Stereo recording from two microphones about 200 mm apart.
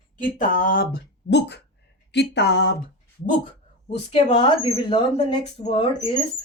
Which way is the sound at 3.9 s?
30° left (ahead or behind).